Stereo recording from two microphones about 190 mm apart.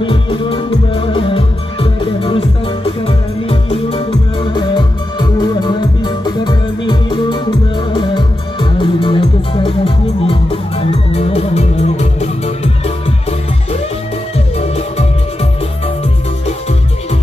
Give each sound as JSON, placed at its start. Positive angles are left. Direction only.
{"t": 0.0, "sound": "music", "side_deg": 25}